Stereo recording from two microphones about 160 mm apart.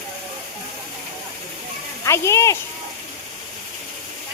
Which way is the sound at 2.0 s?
15° left (ahead or behind).